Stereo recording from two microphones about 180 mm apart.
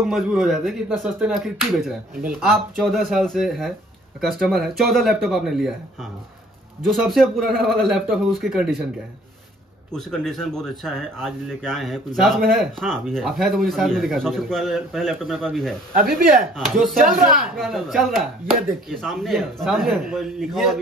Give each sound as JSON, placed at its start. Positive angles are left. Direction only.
{"t": 0.0, "sound": "speech", "side_deg": 0}
{"t": 6.8, "sound": "speech", "side_deg": 0}
{"t": 9.9, "sound": "speech", "side_deg": 5}
{"t": 15.9, "sound": "speech", "side_deg": -50}
{"t": 16.5, "sound": "speech", "side_deg": 0}